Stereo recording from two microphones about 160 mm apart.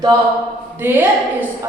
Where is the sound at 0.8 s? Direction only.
15° right (ahead or behind).